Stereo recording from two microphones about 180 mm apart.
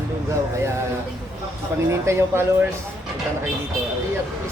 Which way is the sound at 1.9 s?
15° right (ahead or behind).